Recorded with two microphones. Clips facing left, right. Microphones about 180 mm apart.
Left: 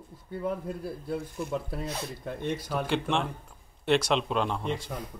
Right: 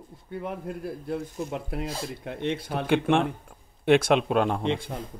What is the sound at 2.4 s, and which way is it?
Speech, 60° right (ahead or behind).